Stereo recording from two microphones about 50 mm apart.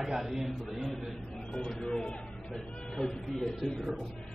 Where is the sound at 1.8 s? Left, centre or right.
Centre.